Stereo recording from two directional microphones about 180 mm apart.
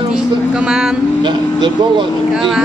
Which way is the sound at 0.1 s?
5° right (ahead or behind).